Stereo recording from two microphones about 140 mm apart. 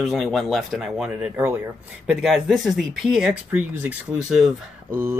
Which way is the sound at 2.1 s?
Centre (ahead or behind).